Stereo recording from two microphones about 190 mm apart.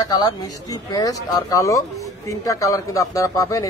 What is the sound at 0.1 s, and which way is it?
Speech, 20° left (ahead or behind).